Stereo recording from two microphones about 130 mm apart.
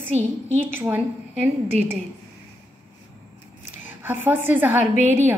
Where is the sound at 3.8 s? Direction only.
15° right (ahead or behind).